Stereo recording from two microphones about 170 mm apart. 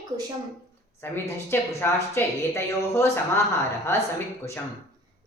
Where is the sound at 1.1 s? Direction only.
15° left (ahead or behind).